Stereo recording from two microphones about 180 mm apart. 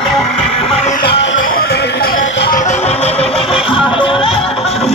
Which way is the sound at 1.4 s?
55° left (ahead or behind).